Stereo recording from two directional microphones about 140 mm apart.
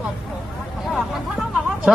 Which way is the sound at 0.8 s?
Centre (ahead or behind).